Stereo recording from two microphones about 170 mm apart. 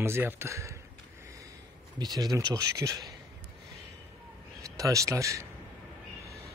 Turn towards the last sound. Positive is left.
turn(degrees=-20)  # may be behind; listen again after turning